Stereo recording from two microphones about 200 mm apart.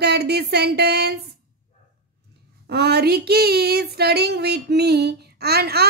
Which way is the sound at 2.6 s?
55° right (ahead or behind).